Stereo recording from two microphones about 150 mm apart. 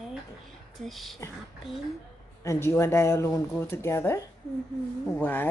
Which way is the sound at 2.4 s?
20° left (ahead or behind).